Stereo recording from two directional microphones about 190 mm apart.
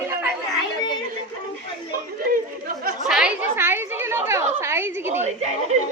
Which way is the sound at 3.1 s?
5° right (ahead or behind).